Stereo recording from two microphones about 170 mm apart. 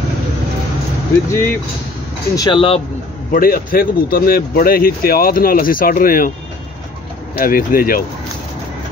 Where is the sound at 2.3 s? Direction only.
30° left (ahead or behind).